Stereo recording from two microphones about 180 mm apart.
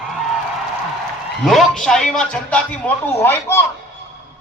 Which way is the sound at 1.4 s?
Centre (ahead or behind).